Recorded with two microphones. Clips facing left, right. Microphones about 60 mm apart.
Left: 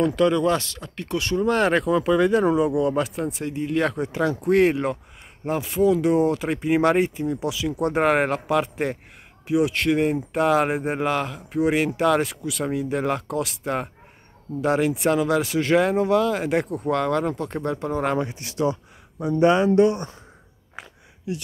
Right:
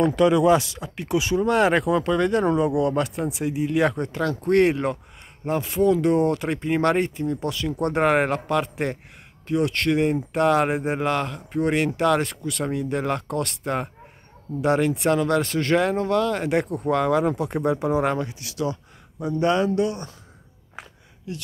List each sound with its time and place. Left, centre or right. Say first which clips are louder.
0.0 s speech: right 2 dB; centre
18.3 s speech: left 3 dB; left
19.4 s speech: left 5 dB; left
21.3 s speech: left 4 dB; centre